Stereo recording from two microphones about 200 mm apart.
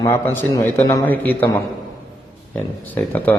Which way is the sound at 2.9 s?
10° left (ahead or behind).